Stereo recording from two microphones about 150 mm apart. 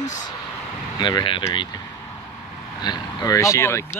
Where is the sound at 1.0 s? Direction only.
30° left (ahead or behind).